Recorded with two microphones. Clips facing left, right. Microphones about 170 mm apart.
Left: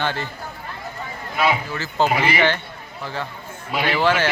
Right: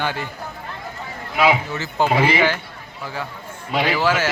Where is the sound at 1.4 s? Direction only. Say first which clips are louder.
Right 3 dB; 15° right (ahead or behind).